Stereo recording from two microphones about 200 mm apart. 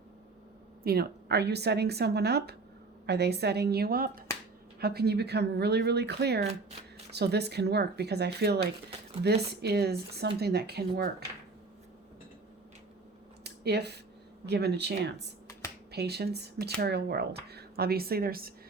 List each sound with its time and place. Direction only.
0.9 s speech: 55° right (ahead or behind)
13.4 s a sound: 55° right (ahead or behind)
14.4 s speech: 55° right (ahead or behind)